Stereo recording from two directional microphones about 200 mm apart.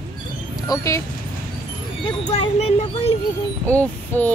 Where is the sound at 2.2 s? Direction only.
25° left (ahead or behind).